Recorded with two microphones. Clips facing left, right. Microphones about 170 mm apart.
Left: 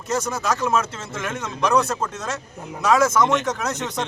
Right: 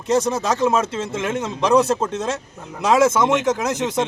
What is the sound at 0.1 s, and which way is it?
A man's voice, 30° right (ahead or behind).